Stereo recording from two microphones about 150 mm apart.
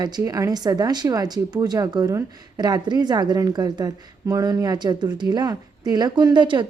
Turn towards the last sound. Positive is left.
turn(degrees=-30)  # may be behind; listen again after turning